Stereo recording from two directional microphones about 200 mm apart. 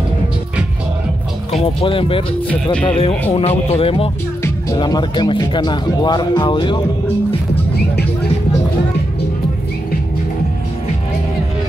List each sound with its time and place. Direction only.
1.5 s speech: 30° left (ahead or behind)
4.4 s speech: 20° left (ahead or behind)
7.9 s music: 55° left (ahead or behind)